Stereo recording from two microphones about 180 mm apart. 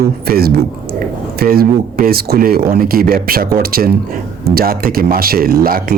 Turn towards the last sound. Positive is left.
turn(degrees=-55)  # may be behind; listen again after turning